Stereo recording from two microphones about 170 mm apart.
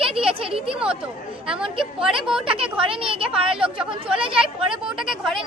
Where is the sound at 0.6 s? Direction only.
5° right (ahead or behind).